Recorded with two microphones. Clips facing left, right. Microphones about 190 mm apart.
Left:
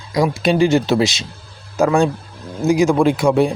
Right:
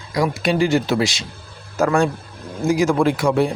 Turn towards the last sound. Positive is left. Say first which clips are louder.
# left 3 dB
turn(degrees=20)  # may be behind; listen again after turning